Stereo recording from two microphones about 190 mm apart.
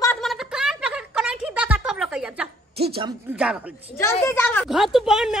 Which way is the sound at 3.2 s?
5° right (ahead or behind).